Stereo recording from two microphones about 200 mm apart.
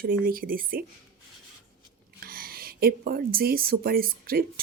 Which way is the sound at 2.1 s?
50° right (ahead or behind).